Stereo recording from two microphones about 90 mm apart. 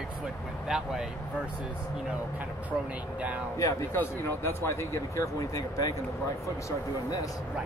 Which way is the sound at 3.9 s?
25° left (ahead or behind).